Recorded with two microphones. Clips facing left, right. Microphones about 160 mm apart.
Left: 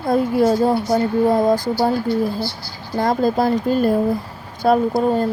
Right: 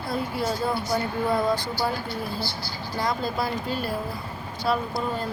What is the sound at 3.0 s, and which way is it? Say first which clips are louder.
Speech: left 10 dB; 45° left (ahead or behind).